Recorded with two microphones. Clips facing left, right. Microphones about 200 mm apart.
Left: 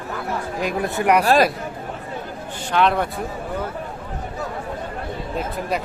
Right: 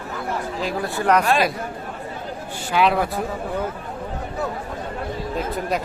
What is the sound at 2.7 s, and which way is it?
Speech, 5° right (ahead or behind).